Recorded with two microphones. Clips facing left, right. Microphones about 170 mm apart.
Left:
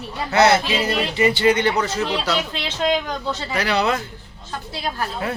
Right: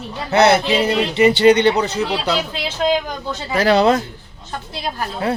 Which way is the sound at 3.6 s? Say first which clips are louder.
Right 8 dB; 45° right (ahead or behind).